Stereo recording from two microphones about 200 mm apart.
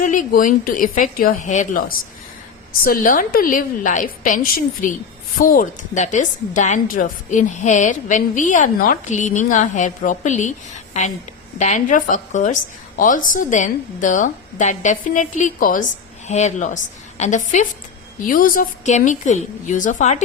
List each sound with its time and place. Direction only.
0.0 s a woman's voice: 40° left (ahead or behind)
11.6 s a woman's voice: 40° left (ahead or behind)